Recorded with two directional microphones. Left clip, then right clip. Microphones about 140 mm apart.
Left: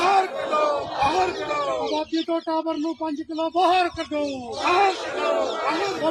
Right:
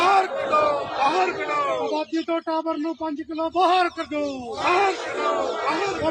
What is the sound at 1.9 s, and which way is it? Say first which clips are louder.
Music: even; 25° left (ahead or behind).